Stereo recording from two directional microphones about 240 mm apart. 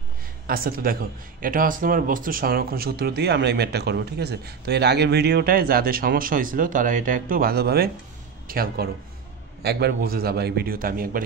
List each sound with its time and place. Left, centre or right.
0.5 s speech: right